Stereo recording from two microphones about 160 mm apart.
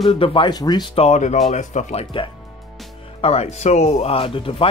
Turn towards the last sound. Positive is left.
turn(degrees=35)  # may be behind; listen again after turning